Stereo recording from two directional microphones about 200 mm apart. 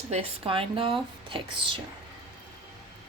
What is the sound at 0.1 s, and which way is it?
Speech, 30° right (ahead or behind).